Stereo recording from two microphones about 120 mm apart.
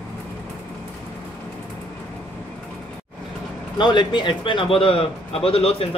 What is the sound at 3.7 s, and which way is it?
A man's voice, 40° left (ahead or behind).